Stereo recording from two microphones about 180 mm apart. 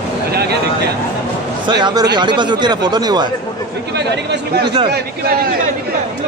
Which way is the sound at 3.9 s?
70° right (ahead or behind).